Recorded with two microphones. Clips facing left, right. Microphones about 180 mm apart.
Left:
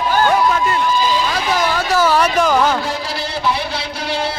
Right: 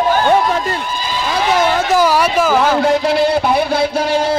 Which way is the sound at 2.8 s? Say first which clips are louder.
Right 11 dB; 60° right (ahead or behind).